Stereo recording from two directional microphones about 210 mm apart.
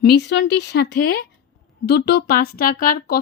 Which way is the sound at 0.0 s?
50° left (ahead or behind).